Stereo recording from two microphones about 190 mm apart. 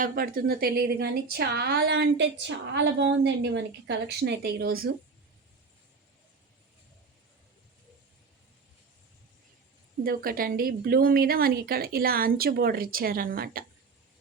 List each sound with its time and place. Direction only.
0.0 s a woman's voice: 50° right (ahead or behind)
10.2 s a woman's voice: 50° right (ahead or behind)